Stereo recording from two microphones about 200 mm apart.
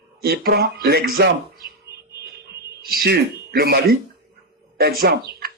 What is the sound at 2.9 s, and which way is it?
A man's voice, 50° right (ahead or behind).